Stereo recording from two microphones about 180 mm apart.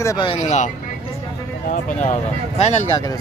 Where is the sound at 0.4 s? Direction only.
45° left (ahead or behind).